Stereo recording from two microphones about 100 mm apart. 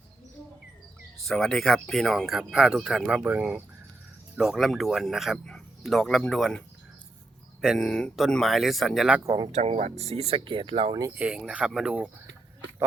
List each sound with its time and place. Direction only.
1.2 s speech: centre (ahead or behind)
3.2 s speech: 15° right (ahead or behind)
4.4 s speech: 5° right (ahead or behind)
7.8 s speech: 10° left (ahead or behind)
9.2 s speech: 40° right (ahead or behind)
9.6 s speech: 90° right; by 10.9 s 60° right (ahead or behind)
11.1 s speech: 15° right (ahead or behind)